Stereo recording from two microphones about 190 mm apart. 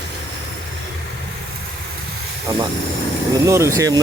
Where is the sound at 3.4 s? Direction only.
15° right (ahead or behind).